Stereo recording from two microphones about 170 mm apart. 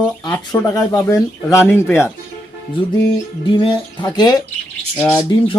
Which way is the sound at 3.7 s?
25° left (ahead or behind).